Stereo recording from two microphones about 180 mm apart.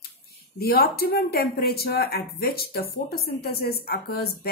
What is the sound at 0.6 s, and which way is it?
Speech, 60° left (ahead or behind).